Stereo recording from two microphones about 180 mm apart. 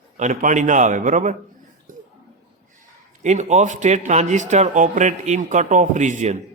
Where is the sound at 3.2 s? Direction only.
40° right (ahead or behind).